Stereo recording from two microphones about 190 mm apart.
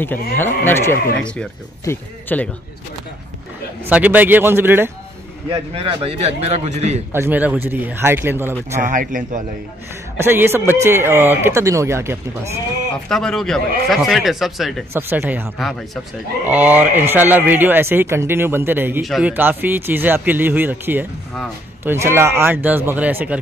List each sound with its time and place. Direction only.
0.0 s a man's voice: 10° left (ahead or behind)
3.8 s speech: 10° right (ahead or behind)
5.8 s a man's voice: 30° right (ahead or behind)
7.1 s speech: 10° right (ahead or behind)
8.8 s speech: 45° right (ahead or behind)
10.1 s speech: 10° right (ahead or behind)
13.1 s a man's voice: 5° left (ahead or behind)
14.9 s speech: 10° right (ahead or behind)
15.5 s a man's voice: centre (ahead or behind)